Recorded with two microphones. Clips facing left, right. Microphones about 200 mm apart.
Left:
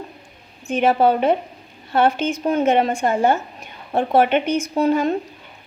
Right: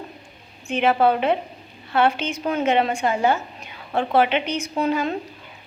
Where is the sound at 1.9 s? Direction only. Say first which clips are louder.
Left 3 dB; 45° left (ahead or behind).